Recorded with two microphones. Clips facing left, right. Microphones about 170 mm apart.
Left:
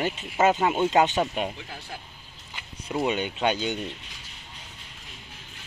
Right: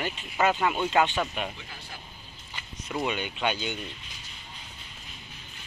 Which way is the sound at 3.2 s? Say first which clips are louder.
Left 4 dB; 40° left (ahead or behind).